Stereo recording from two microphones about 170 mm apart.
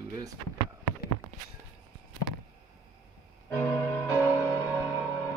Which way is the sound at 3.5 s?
10° left (ahead or behind).